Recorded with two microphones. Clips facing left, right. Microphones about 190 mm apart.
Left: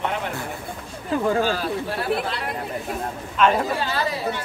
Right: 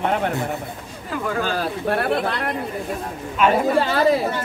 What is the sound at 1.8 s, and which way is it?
Speech, 60° right (ahead or behind).